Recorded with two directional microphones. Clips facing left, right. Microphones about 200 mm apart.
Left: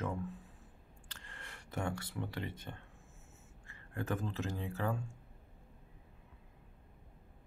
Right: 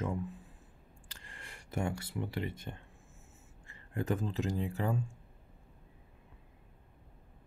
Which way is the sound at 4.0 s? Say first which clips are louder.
Right 4 dB; 15° right (ahead or behind).